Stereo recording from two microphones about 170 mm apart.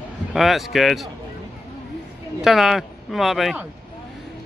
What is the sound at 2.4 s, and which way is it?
Speech, centre (ahead or behind).